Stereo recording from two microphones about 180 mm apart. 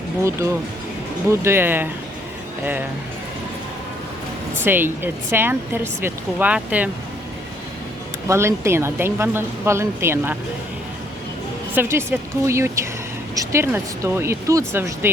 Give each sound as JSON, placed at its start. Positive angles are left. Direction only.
{"t": 0.2, "sound": "speech", "side_deg": -15}
{"t": 4.6, "sound": "speech", "side_deg": -10}
{"t": 8.3, "sound": "speech", "side_deg": -15}
{"t": 11.7, "sound": "speech", "side_deg": -10}